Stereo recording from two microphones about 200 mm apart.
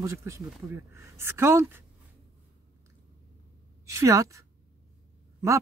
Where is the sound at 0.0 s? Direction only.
15° right (ahead or behind).